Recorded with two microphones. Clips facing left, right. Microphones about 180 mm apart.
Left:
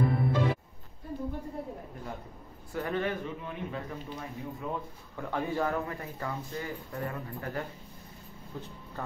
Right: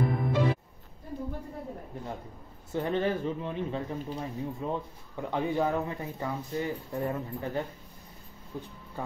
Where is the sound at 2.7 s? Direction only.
25° right (ahead or behind).